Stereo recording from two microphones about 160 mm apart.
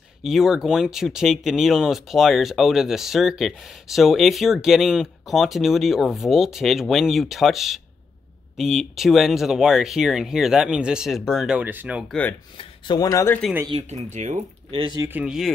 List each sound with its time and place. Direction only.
0.2 s speech: centre (ahead or behind)
12.1 s speech: 10° left (ahead or behind)
12.5 s speech: 30° left (ahead or behind)
13.7 s speech: 40° right (ahead or behind)
14.8 s speech: 25° right (ahead or behind)
15.1 s speech: 5° right (ahead or behind)